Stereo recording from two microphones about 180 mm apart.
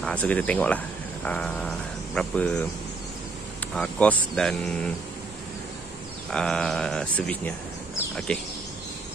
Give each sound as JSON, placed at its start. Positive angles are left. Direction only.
{"t": 0.0, "sound": "speech", "side_deg": 5}
{"t": 3.7, "sound": "speech", "side_deg": 5}
{"t": 6.3, "sound": "speech", "side_deg": 5}